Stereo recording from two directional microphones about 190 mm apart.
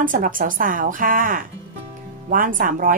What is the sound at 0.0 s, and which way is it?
Speech, 45° right (ahead or behind).